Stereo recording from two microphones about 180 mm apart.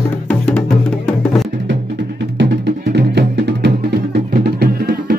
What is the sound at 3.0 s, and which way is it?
Music, 65° right (ahead or behind).